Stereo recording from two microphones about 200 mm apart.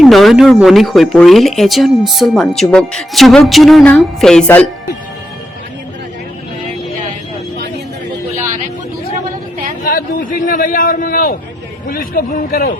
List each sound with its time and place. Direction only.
0.0 s speech: centre (ahead or behind)
9.8 s a sound: 45° left (ahead or behind)
11.9 s speech: 45° left (ahead or behind)